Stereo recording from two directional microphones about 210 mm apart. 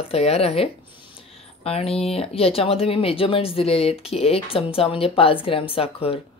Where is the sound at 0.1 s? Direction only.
30° left (ahead or behind).